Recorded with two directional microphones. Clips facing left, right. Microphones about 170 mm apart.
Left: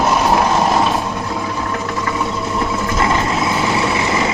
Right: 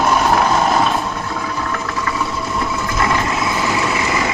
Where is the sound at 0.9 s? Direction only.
15° left (ahead or behind).